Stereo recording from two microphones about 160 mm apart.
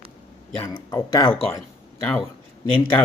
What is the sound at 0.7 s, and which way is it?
Speech, 25° left (ahead or behind).